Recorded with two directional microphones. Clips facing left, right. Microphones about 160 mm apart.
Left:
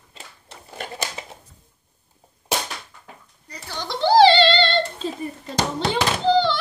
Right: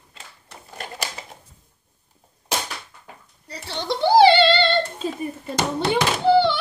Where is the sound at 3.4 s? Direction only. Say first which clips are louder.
Right 5 dB; 30° right (ahead or behind).